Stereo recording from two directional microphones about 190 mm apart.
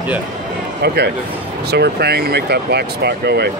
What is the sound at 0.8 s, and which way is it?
Speech, 60° right (ahead or behind).